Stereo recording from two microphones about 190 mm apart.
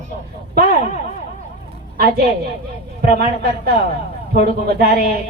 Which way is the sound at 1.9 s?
50° right (ahead or behind).